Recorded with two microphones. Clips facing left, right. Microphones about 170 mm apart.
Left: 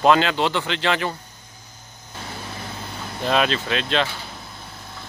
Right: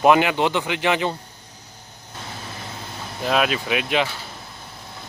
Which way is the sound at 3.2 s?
5° right (ahead or behind).